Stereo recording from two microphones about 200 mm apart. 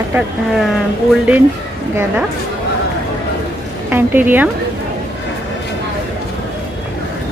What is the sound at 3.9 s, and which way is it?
Speech, 10° right (ahead or behind).